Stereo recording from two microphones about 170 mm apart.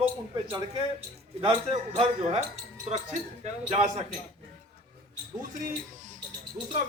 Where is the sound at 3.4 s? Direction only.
40° right (ahead or behind).